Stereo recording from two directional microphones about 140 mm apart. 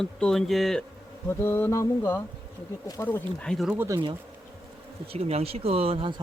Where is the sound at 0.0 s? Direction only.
5° left (ahead or behind).